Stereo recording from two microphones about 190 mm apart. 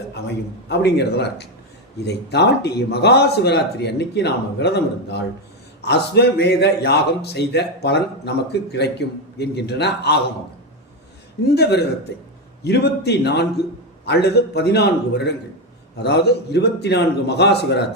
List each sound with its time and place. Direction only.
0.7 s a man's voice: 60° left (ahead or behind)
11.4 s a man's voice: 60° left (ahead or behind)